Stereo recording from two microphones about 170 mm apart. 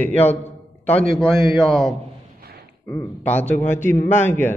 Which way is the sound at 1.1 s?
Centre (ahead or behind).